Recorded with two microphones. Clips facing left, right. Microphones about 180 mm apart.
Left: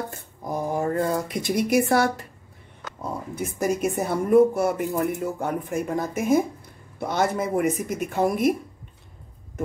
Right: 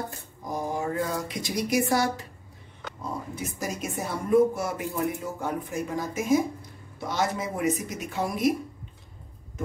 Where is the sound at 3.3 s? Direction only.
55° left (ahead or behind).